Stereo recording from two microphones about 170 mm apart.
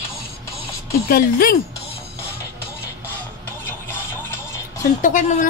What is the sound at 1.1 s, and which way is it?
Speech, 55° left (ahead or behind).